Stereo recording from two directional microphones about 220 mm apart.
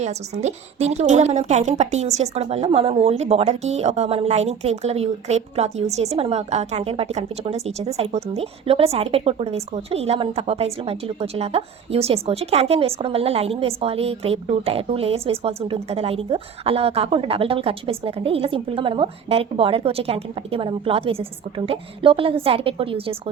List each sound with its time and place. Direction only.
0.0 s a woman's voice: 30° right (ahead or behind)